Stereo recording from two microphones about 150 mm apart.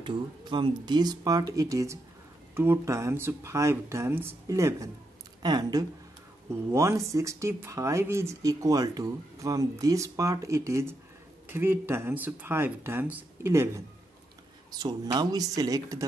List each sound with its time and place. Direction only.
0.0 s speech: 35° right (ahead or behind)